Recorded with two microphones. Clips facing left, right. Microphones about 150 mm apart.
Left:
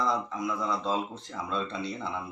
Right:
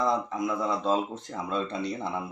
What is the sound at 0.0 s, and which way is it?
Speech, 50° right (ahead or behind).